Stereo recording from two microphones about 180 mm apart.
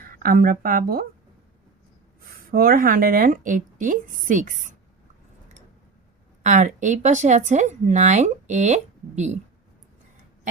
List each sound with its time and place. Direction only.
0.0 s speech: 55° right (ahead or behind)
2.2 s speech: 55° right (ahead or behind)
6.4 s speech: 40° right (ahead or behind)